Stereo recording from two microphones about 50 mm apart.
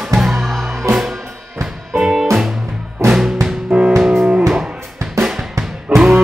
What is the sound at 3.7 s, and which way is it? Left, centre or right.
Music, right.